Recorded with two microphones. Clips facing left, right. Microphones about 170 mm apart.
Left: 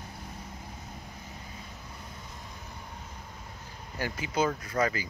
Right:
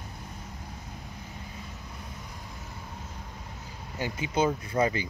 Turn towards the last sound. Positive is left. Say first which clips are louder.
# right 2 dB
turn(degrees=-25)  # may be behind; listen again after turning